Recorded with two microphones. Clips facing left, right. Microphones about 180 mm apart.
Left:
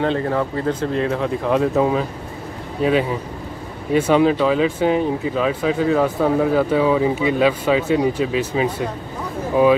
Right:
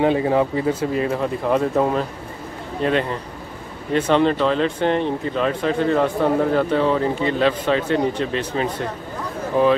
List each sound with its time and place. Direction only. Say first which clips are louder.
0.0 s speech: right 3 dB; 15° right (ahead or behind); by 9.7 s 10° left (ahead or behind)